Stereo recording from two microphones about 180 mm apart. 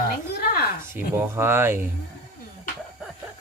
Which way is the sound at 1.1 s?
15° right (ahead or behind).